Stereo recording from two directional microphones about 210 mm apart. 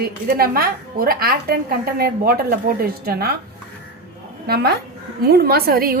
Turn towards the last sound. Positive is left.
turn(degrees=-45)  # may be behind; listen again after turning